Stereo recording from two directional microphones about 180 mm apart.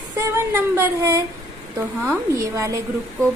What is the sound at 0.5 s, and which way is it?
A woman's voice, 15° right (ahead or behind).